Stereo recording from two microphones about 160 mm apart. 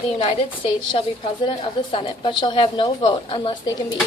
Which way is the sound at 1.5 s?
30° left (ahead or behind).